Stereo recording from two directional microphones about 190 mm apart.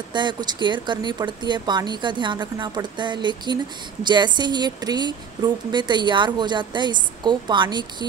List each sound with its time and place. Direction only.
0.1 s a woman's voice: 25° right (ahead or behind)